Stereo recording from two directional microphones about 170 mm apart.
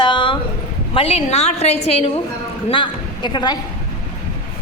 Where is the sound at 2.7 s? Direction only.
30° left (ahead or behind).